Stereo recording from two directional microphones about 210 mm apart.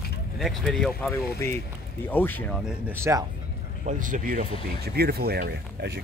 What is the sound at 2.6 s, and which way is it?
Speech, 10° right (ahead or behind).